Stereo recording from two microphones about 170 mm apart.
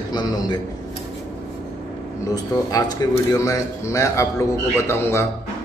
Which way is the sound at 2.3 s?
20° left (ahead or behind).